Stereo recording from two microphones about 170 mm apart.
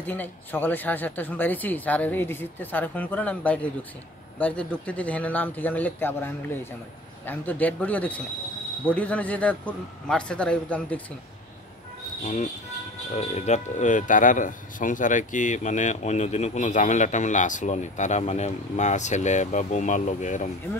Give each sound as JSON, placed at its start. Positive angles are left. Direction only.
{"t": 0.0, "sound": "speech", "side_deg": 10}
{"t": 13.1, "sound": "speech", "side_deg": 40}